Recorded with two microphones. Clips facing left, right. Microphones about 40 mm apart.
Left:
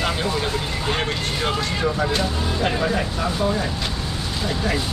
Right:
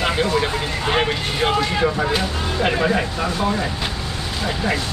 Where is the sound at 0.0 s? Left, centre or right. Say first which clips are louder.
Right 4 dB; centre.